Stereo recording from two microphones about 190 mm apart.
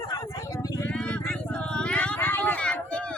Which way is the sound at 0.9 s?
5° left (ahead or behind).